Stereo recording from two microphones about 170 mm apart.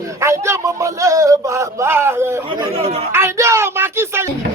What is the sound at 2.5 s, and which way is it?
Speech, 30° right (ahead or behind).